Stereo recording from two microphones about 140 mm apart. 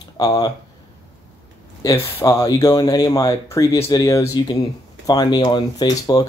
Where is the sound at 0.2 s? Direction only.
25° left (ahead or behind).